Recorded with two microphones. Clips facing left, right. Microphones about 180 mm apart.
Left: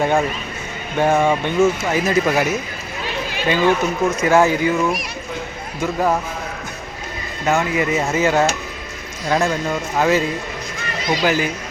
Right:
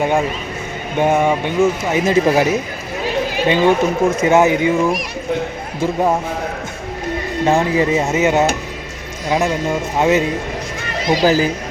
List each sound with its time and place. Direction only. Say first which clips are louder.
0.0 s speech: right 1 dB; 15° right (ahead or behind)
7.4 s speech: right 3 dB; 30° right (ahead or behind)
11.1 s speech: right 5 dB; 35° right (ahead or behind)